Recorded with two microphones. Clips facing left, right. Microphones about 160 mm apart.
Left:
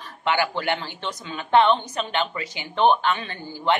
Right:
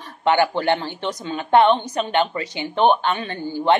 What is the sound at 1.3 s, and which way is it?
A woman's voice, 40° right (ahead or behind).